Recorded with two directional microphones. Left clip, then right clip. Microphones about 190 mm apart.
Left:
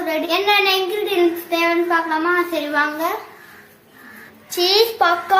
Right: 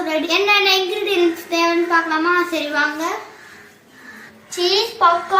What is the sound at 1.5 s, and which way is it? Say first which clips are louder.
A child's voice: even; 10° left (ahead or behind).